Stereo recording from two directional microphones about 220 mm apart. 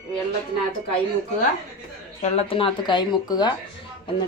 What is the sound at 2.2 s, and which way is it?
Speech, 25° left (ahead or behind).